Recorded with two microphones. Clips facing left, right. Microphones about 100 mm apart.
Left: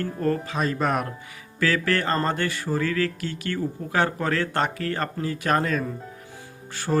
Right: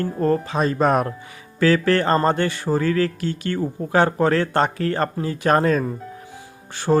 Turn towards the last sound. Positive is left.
turn(degrees=-50)  # may be behind; listen again after turning